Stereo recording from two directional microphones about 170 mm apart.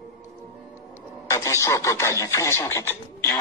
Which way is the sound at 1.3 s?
15° left (ahead or behind).